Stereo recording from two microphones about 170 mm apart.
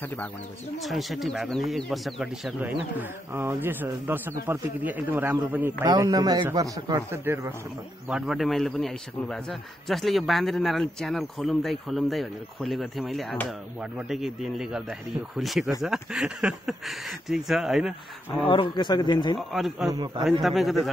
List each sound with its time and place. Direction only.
0.0 s speech: 10° left (ahead or behind)
0.8 s a man's voice: centre (ahead or behind)
3.0 s a man's voice: 10° right (ahead or behind)
5.9 s speech: 25° right (ahead or behind)
8.1 s a man's voice: centre (ahead or behind)
18.4 s speech: 30° left (ahead or behind)
19.3 s a man's voice: centre (ahead or behind)
19.9 s speech: 25° right (ahead or behind)
20.4 s a man's voice: centre (ahead or behind)